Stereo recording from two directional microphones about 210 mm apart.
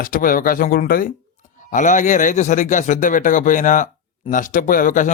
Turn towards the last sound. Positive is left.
turn(degrees=40)  # may be behind; listen again after turning